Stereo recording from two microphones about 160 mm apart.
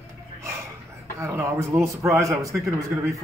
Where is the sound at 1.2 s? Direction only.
15° right (ahead or behind).